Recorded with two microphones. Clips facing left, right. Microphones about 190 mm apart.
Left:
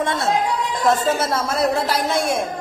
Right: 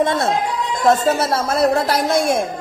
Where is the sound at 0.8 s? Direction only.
35° right (ahead or behind).